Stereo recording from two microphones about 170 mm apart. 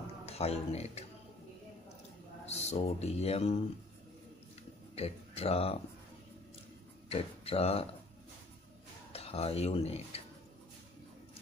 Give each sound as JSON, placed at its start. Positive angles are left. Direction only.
{"t": 0.2, "sound": "speech", "side_deg": 35}
{"t": 2.4, "sound": "speech", "side_deg": 40}
{"t": 4.9, "sound": "speech", "side_deg": 35}
{"t": 7.1, "sound": "speech", "side_deg": 35}
{"t": 9.1, "sound": "speech", "side_deg": 35}